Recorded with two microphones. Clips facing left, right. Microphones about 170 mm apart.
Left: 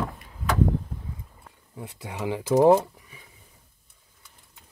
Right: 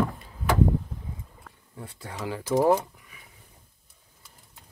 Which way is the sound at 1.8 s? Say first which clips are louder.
Left 3 dB; 15° left (ahead or behind).